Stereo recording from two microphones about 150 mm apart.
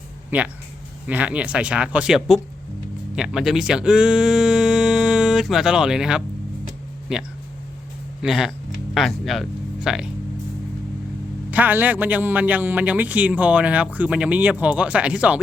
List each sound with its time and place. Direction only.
0.3 s speech: 10° right (ahead or behind)
11.5 s speech: 10° right (ahead or behind)